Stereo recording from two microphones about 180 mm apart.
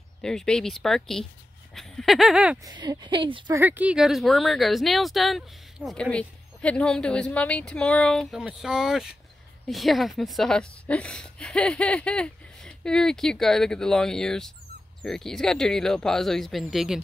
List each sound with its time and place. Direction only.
0.2 s speech: 5° left (ahead or behind)
2.6 s a woman's voice: 25° right (ahead or behind)
3.5 s speech: 10° right (ahead or behind)